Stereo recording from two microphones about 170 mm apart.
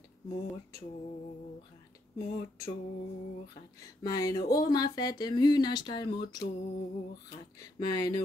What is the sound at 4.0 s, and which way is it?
Speech, 20° left (ahead or behind).